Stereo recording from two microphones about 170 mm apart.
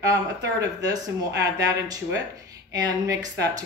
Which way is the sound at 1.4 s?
20° right (ahead or behind).